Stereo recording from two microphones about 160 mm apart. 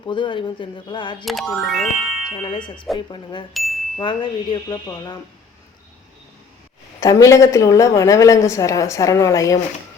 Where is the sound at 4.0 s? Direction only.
30° left (ahead or behind).